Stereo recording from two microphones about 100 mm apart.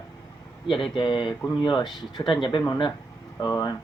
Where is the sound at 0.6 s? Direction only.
60° left (ahead or behind).